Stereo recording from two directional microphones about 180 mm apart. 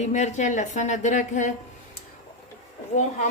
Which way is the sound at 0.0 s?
40° left (ahead or behind).